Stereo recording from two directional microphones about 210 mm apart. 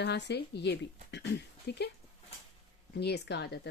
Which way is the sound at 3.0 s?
50° left (ahead or behind).